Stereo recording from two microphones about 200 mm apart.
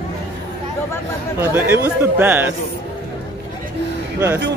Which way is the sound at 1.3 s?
10° right (ahead or behind).